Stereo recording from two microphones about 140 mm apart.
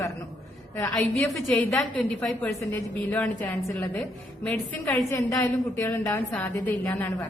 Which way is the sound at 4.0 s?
10° left (ahead or behind).